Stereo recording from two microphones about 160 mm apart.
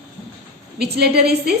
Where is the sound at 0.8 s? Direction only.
80° right.